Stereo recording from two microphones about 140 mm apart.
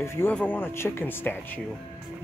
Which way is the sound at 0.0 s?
20° left (ahead or behind).